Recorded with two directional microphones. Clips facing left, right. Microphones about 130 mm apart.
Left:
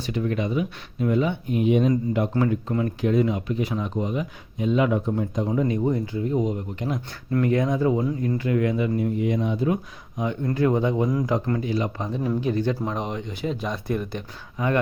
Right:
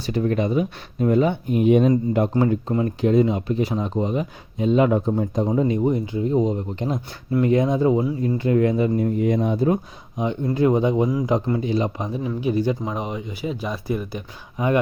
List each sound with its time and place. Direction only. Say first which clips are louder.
0.0 s speech: right 4 dB; 40° right (ahead or behind)
2.4 s speech: right 3 dB; 30° right (ahead or behind)
5.5 s speech: right 2 dB; 25° right (ahead or behind)
10.2 s speech: right 3 dB; 25° right (ahead or behind); by 14.3 s 5° right (ahead or behind)
14.6 s speech: right 3 dB; 20° right (ahead or behind)